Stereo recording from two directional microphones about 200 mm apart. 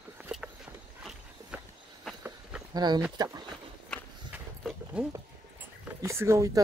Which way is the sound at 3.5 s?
5° right (ahead or behind).